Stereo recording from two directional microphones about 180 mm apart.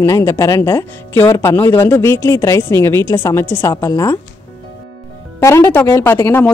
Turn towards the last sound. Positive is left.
turn(degrees=10)  # may be behind; listen again after turning